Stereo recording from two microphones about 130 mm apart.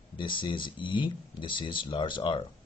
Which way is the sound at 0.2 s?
40° left (ahead or behind).